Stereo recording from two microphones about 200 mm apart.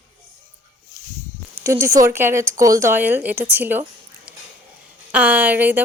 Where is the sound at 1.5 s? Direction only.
15° right (ahead or behind).